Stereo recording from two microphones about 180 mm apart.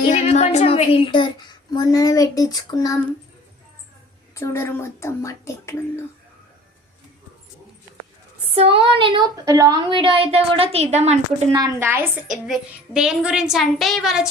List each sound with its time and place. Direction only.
0.1 s a woman's voice: 40° left (ahead or behind); by 3.0 s 20° left (ahead or behind)
4.4 s a woman's voice: 15° left (ahead or behind)
8.5 s a woman's voice: 30° right (ahead or behind)
11.5 s a woman's voice: 20° right (ahead or behind)
12.3 s a woman's voice: centre (ahead or behind)